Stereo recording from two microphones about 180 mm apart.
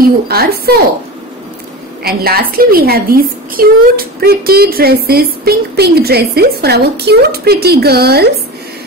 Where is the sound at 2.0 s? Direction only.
60° right (ahead or behind).